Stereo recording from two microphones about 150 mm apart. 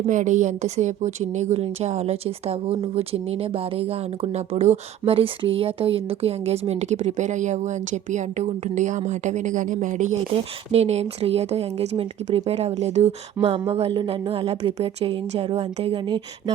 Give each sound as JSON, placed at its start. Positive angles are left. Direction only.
{"t": 0.0, "sound": "a woman's voice", "side_deg": -55}
{"t": 10.7, "sound": "speech", "side_deg": -45}